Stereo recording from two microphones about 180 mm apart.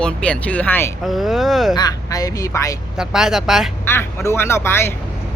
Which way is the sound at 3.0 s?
Centre (ahead or behind).